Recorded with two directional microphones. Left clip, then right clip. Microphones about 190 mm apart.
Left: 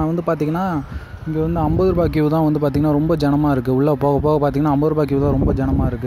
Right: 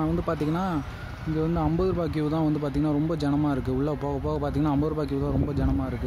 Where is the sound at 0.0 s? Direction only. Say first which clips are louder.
Left 8 dB; 35° left (ahead or behind).